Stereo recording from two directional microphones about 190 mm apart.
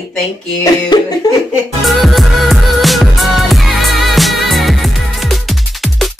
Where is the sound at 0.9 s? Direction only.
25° left (ahead or behind).